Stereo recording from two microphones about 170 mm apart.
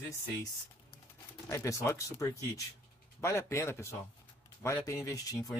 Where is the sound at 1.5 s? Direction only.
20° left (ahead or behind).